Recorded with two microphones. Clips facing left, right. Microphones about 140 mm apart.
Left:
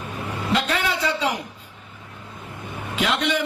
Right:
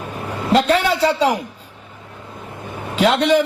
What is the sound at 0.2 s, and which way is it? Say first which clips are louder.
Vehicle: right 7 dB; 35° right (ahead or behind).